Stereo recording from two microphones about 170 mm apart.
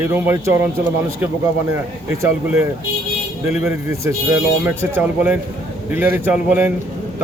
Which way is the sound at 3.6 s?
15° right (ahead or behind).